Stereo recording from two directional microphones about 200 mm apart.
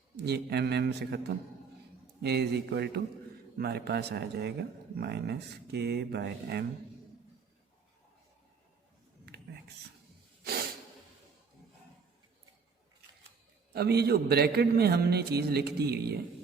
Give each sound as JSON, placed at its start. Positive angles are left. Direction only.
{"t": 0.3, "sound": "speech", "side_deg": -55}
{"t": 2.2, "sound": "a man's voice", "side_deg": -55}
{"t": 13.7, "sound": "a man's voice", "side_deg": -55}